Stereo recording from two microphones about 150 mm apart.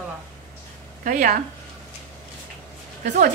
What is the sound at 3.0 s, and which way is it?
Speech, 55° right (ahead or behind).